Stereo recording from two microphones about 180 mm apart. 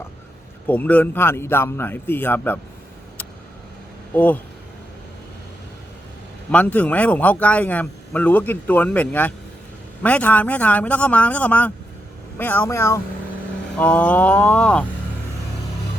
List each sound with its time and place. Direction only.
0.7 s speech: 10° left (ahead or behind)
4.1 s speech: 10° left (ahead or behind)
6.5 s speech: 10° left (ahead or behind)